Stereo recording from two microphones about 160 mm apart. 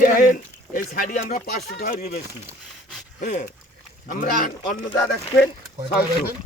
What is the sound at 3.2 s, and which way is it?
Speech, 50° left (ahead or behind).